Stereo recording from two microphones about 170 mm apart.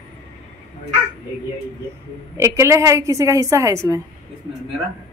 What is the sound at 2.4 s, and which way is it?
A woman's voice, 15° right (ahead or behind).